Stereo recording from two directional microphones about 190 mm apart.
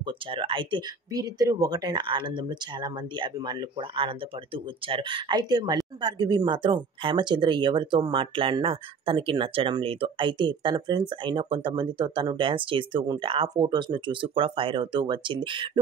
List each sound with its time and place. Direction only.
0.3 s speech: 25° right (ahead or behind)